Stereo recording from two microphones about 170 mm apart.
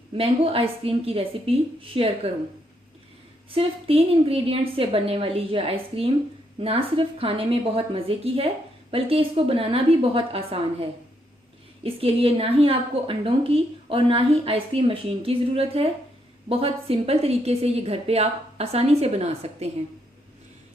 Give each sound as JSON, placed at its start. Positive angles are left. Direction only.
{"t": 0.1, "sound": "a woman's voice", "side_deg": -35}
{"t": 3.5, "sound": "a woman's voice", "side_deg": -35}